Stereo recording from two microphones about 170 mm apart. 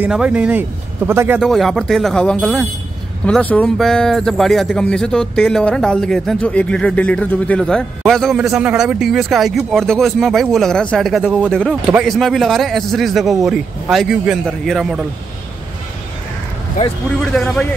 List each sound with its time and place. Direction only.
0.0 s speech: 5° right (ahead or behind)
1.4 s speech: centre (ahead or behind)
16.8 s speech: 55° left (ahead or behind)
17.2 s speech: 5° left (ahead or behind)